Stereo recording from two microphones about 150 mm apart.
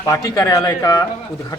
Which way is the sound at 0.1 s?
20° left (ahead or behind).